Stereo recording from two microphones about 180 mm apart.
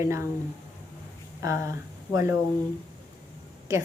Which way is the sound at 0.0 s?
15° right (ahead or behind).